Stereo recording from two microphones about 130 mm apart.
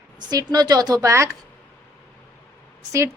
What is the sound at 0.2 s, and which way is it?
A woman's voice, 30° right (ahead or behind).